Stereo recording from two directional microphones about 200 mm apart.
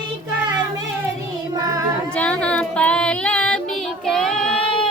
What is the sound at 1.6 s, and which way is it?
Child singing, 20° right (ahead or behind).